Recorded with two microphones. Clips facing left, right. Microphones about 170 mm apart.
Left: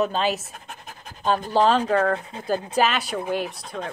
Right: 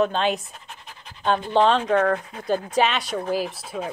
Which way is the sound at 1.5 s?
Centre (ahead or behind).